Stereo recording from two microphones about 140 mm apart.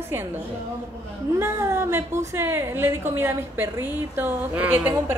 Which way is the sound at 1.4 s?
20° right (ahead or behind).